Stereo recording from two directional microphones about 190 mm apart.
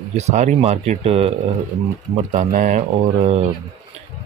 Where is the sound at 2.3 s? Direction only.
40° right (ahead or behind).